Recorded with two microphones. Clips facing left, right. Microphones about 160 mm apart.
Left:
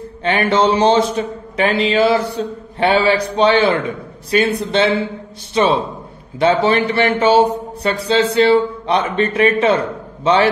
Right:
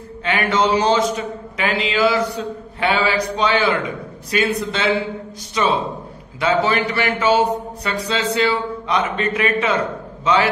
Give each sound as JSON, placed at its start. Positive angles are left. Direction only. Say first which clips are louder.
{"t": 0.2, "sound": "speech", "louder": "left 4 dB", "side_deg": 30}